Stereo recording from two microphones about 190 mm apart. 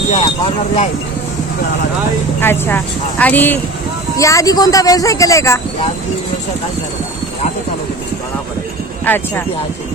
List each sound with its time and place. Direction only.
0.1 s speech: 30° left (ahead or behind)
2.4 s speech: 10° left (ahead or behind)
9.0 s speech: 10° left (ahead or behind)